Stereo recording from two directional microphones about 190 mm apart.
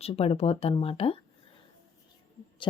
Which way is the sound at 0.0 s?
30° left (ahead or behind).